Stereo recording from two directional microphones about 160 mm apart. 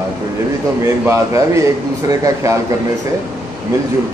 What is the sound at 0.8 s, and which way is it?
A man's voice, 20° right (ahead or behind).